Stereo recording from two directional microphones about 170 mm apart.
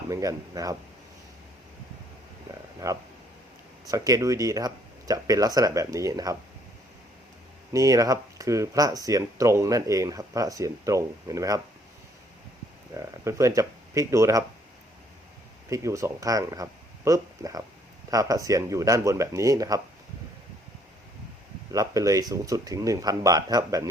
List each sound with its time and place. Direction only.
0.1 s speech: 20° right (ahead or behind)
2.8 s speech: 20° right (ahead or behind)
7.7 s speech: 20° right (ahead or behind)
12.9 s speech: 20° right (ahead or behind)
15.7 s speech: 20° right (ahead or behind)
21.7 s speech: 20° right (ahead or behind)